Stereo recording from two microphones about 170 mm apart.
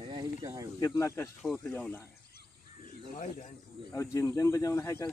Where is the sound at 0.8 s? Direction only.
15° left (ahead or behind).